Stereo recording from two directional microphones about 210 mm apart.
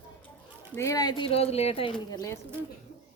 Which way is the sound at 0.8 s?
15° left (ahead or behind).